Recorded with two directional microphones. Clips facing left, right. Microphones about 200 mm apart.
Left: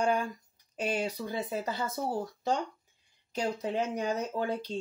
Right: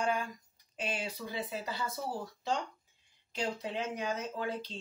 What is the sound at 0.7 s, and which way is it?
Speech, 40° left (ahead or behind).